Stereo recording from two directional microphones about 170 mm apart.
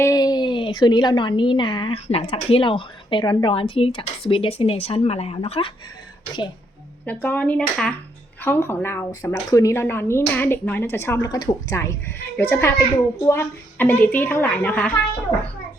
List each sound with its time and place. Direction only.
0.0 s a woman's voice: 20° left (ahead or behind)
7.0 s speech: 10° left (ahead or behind)